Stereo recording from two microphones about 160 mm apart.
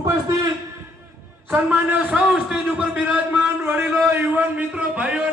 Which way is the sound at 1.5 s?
10° right (ahead or behind).